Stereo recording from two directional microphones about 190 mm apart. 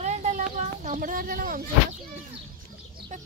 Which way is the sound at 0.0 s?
40° right (ahead or behind).